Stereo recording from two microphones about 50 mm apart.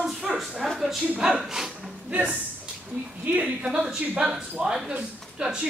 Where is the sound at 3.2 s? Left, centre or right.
Right.